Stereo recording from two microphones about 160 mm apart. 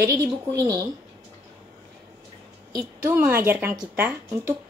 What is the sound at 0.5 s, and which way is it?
Speech, 20° right (ahead or behind).